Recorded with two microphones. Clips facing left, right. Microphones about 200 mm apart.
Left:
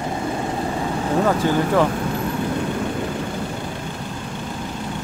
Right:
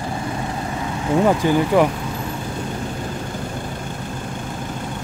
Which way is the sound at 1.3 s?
15° right (ahead or behind).